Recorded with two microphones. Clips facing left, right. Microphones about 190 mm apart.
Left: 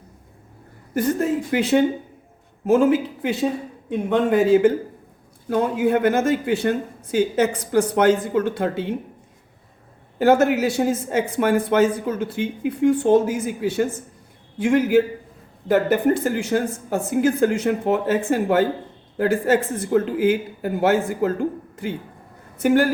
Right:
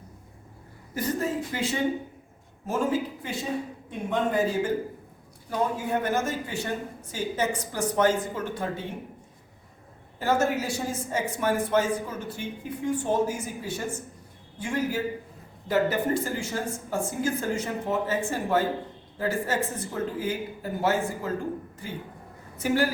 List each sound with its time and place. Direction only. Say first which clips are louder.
1.2 s speech: left 8 dB; 65° left (ahead or behind)
2.6 s speech: left 10 dB; 80° left
5.7 s speech: left 9 dB; 80° left
10.2 s speech: left 9 dB; 75° left (ahead or behind)
15.6 s speech: left 7 dB; 60° left (ahead or behind)
22.6 s a woman's voice: left 7 dB; 55° left (ahead or behind)